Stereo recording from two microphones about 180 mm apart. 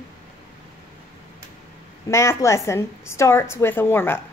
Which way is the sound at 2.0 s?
15° left (ahead or behind).